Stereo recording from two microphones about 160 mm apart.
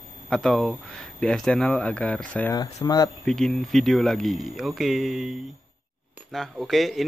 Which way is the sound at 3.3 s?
5° left (ahead or behind).